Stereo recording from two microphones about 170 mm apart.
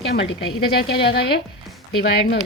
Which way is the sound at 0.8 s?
70° left (ahead or behind).